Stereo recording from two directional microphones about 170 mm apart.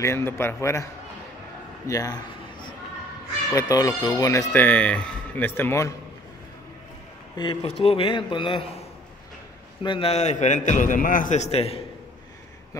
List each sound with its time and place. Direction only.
0.0 s speech: 15° left (ahead or behind)
1.9 s a sound: 20° left (ahead or behind)
3.5 s speech: 20° left (ahead or behind)
7.3 s a man's voice: 25° left (ahead or behind)
9.8 s a man's voice: 35° left (ahead or behind)